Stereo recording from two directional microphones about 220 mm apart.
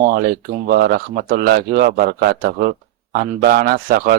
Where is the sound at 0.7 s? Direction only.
45° right (ahead or behind).